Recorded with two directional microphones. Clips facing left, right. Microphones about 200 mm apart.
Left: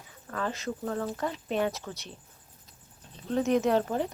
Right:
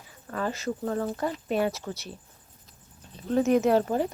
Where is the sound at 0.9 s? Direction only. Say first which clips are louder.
Right 3 dB; 20° right (ahead or behind).